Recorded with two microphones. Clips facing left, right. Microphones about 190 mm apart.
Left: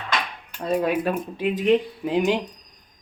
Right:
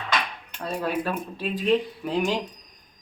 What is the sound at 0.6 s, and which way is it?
Speech, 15° left (ahead or behind).